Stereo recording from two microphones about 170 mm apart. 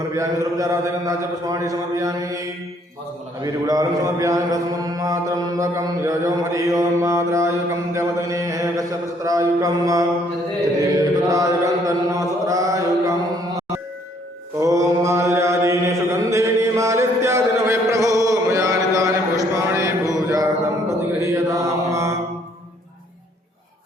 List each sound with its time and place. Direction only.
0.1 s mantra: 20° right (ahead or behind)
3.4 s mantra: 20° right (ahead or behind)
11.3 s chant: 20° right (ahead or behind)
14.6 s mantra: 20° right (ahead or behind)
20.1 s a sound: 20° right (ahead or behind)
21.2 s mantra: 20° right (ahead or behind)